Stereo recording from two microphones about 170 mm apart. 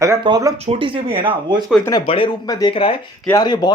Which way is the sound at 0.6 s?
35° right (ahead or behind).